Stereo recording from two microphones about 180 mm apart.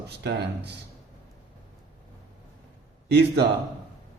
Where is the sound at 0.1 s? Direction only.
70° right (ahead or behind).